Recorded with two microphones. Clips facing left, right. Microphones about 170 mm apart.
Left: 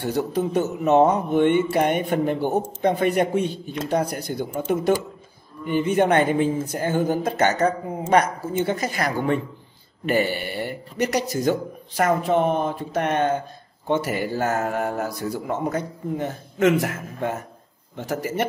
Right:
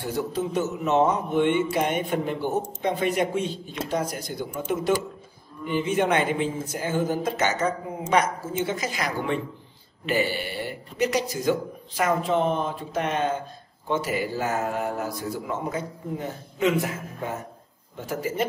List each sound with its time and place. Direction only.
0.0 s mantra: 65° left (ahead or behind)
10.0 s a man's voice: 50° left (ahead or behind)
12.0 s mantra: 55° left (ahead or behind)
13.8 s a man's voice: 60° left (ahead or behind)
14.6 s mantra: 55° left (ahead or behind)
15.5 s a man's voice: 70° left (ahead or behind)